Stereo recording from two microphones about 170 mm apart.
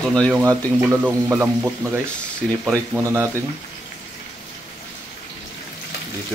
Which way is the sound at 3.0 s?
20° right (ahead or behind).